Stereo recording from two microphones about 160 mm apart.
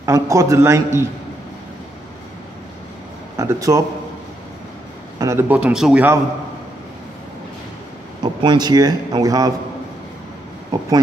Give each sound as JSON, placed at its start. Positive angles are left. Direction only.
{"t": 0.0, "sound": "a man's voice", "side_deg": -20}
{"t": 3.3, "sound": "speech", "side_deg": -20}
{"t": 5.2, "sound": "a man's voice", "side_deg": -15}
{"t": 8.2, "sound": "speech", "side_deg": -25}
{"t": 10.7, "sound": "speech", "side_deg": -25}